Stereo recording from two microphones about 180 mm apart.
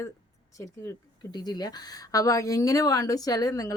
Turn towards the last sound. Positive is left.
turn(degrees=20)  # may be behind; listen again after turning